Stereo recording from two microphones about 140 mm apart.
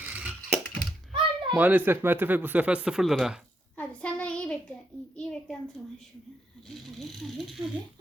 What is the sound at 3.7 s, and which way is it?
Child singing, 10° left (ahead or behind).